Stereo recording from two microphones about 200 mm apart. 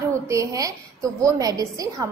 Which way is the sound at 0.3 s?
15° right (ahead or behind).